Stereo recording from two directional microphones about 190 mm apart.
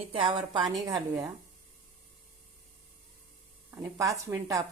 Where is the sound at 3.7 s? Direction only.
15° right (ahead or behind).